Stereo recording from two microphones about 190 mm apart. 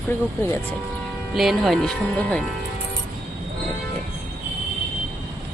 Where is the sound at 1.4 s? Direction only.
Centre (ahead or behind).